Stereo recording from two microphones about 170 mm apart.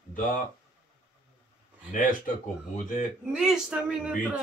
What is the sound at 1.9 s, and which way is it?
Speech, 55° left (ahead or behind).